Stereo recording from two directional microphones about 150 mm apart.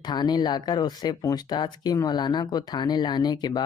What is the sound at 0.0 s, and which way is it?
Speech, 25° left (ahead or behind).